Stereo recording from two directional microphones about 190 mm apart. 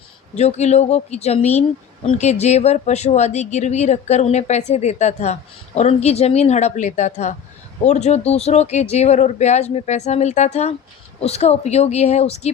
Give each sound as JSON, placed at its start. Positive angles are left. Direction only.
{"t": 0.3, "sound": "speech", "side_deg": 35}